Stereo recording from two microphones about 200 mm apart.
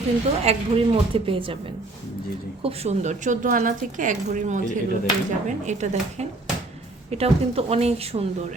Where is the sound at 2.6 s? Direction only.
35° right (ahead or behind).